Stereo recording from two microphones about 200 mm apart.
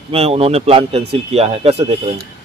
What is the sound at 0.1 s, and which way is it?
A man's voice, 30° right (ahead or behind).